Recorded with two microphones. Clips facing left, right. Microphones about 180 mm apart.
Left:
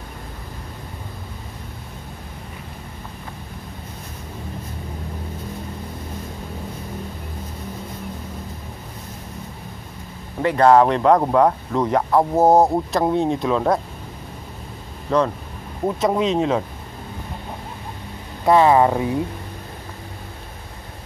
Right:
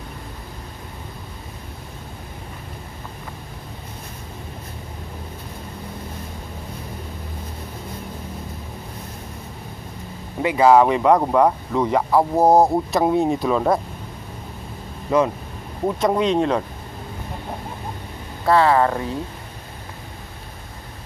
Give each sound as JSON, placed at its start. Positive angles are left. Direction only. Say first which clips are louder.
{"t": 10.4, "sound": "speech", "louder": "even", "side_deg": -5}
{"t": 15.0, "sound": "speech", "louder": "right 1 dB", "side_deg": -10}
{"t": 18.4, "sound": "speech", "louder": "left 2 dB", "side_deg": 15}